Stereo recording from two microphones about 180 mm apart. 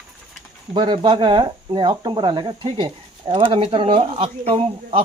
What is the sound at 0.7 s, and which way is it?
Speech, 25° right (ahead or behind).